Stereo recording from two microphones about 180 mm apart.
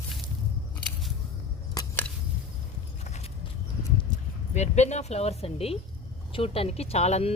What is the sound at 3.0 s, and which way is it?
Horse, 40° left (ahead or behind).